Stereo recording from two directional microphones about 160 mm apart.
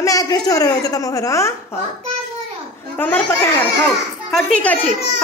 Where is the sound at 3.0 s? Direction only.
10° left (ahead or behind).